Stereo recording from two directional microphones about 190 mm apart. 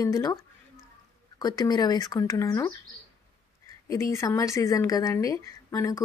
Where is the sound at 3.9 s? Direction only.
15° left (ahead or behind).